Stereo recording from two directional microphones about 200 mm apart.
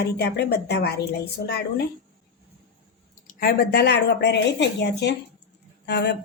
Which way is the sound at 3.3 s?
45° left (ahead or behind).